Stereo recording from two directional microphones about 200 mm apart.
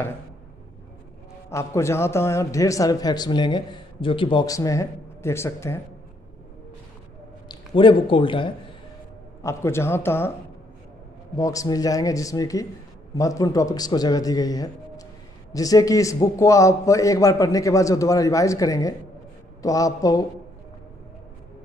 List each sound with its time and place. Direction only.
1.5 s a man's voice: 15° left (ahead or behind)
7.4 s a man's voice: 25° left (ahead or behind)
9.4 s a man's voice: 15° left (ahead or behind)
11.3 s a man's voice: 15° left (ahead or behind)